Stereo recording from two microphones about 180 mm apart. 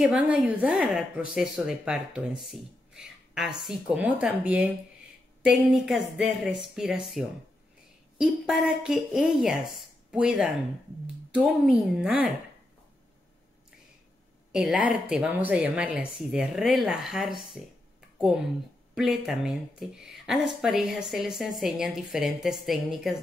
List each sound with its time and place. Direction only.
0.0 s a woman's voice: 5° right (ahead or behind)
14.5 s a woman's voice: 5° right (ahead or behind)
18.9 s a woman's voice: centre (ahead or behind)